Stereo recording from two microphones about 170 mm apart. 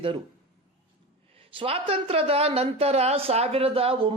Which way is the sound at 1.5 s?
35° right (ahead or behind).